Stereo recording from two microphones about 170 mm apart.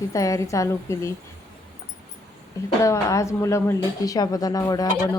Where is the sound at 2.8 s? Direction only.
20° left (ahead or behind).